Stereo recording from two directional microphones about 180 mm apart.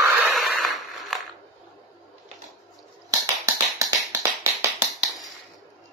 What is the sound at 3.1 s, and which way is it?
Finger snapping, 20° right (ahead or behind).